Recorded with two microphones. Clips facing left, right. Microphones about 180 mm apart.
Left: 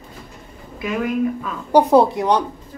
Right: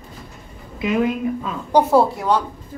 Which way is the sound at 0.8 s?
20° right (ahead or behind).